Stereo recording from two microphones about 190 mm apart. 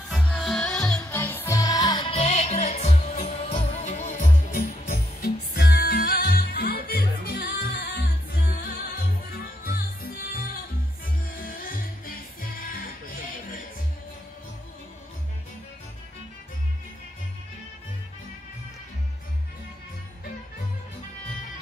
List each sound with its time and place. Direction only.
0.1 s music: centre (ahead or behind); by 12.7 s 50° left (ahead or behind)